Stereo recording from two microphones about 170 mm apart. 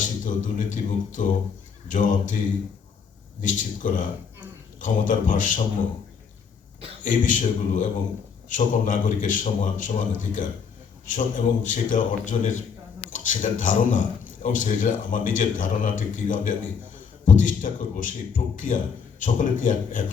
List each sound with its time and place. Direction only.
0.0 s a man's voice: 50° left (ahead or behind)
3.4 s a man's voice: 50° left (ahead or behind)
7.0 s a man's voice: 50° left (ahead or behind)